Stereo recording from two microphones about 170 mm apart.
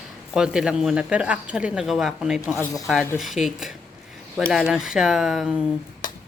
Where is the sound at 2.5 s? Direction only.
20° left (ahead or behind).